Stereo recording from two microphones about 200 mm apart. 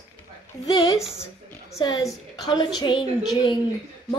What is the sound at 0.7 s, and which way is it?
A woman's voice, 20° left (ahead or behind).